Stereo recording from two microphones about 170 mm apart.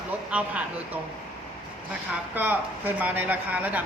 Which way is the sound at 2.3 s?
10° right (ahead or behind).